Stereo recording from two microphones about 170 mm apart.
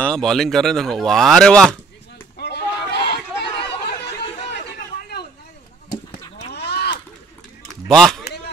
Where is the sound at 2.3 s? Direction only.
80° left.